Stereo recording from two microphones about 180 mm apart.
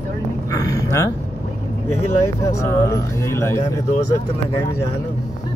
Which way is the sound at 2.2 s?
15° left (ahead or behind).